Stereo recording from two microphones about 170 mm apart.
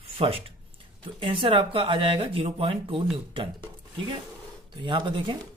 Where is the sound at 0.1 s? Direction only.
35° right (ahead or behind).